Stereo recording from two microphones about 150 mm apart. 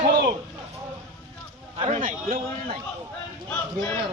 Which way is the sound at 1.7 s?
40° right (ahead or behind).